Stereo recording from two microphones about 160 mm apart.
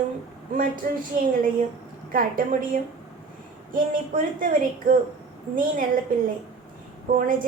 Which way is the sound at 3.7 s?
60° right (ahead or behind).